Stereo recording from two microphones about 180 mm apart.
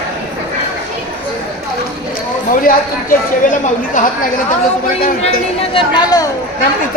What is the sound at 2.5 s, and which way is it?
Speech, 50° left (ahead or behind).